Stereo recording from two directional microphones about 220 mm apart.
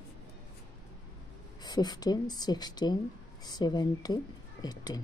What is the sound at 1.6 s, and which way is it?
A woman's voice, 20° left (ahead or behind).